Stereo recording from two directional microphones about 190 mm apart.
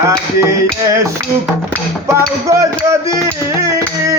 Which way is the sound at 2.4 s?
15° right (ahead or behind).